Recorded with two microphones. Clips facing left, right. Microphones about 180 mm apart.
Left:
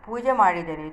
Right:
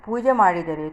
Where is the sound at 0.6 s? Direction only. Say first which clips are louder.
Right 5 dB; 50° right (ahead or behind).